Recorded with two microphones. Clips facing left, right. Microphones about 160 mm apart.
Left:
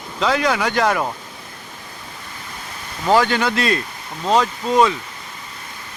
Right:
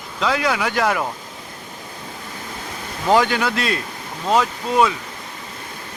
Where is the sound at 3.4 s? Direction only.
5° right (ahead or behind).